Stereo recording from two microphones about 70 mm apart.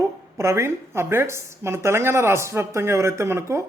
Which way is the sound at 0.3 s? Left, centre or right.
Right.